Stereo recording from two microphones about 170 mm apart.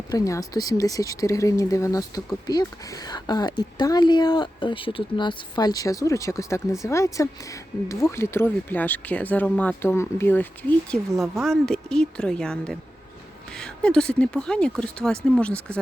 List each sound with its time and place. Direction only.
0.1 s speech: 20° left (ahead or behind)
11.1 s speech: centre (ahead or behind)